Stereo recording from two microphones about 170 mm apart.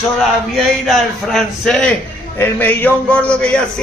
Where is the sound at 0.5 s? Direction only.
Centre (ahead or behind).